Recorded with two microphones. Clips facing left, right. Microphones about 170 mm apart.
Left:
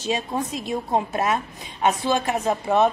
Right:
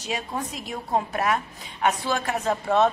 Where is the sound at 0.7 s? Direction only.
20° left (ahead or behind).